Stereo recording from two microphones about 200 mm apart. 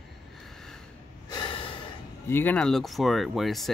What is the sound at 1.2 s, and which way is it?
Gasp, 20° left (ahead or behind).